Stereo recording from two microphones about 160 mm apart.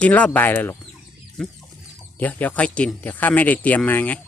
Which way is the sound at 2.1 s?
10° left (ahead or behind).